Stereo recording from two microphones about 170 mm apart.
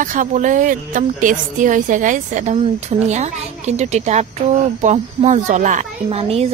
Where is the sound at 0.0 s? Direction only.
50° right (ahead or behind).